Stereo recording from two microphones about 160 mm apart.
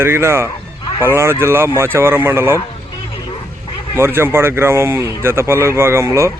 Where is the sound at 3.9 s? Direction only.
15° right (ahead or behind).